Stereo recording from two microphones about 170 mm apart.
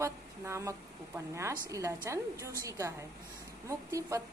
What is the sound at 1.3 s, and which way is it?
A woman's voice, 15° right (ahead or behind).